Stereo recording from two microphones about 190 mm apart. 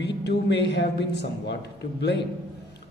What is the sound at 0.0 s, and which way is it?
A man's voice, 65° left (ahead or behind).